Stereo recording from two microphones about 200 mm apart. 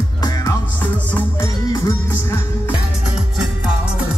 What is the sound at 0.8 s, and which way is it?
Music, 10° left (ahead or behind).